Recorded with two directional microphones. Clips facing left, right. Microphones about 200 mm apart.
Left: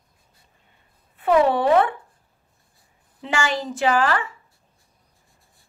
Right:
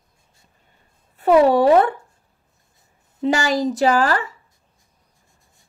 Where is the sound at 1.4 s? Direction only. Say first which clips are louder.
Right 4 dB; 40° right (ahead or behind).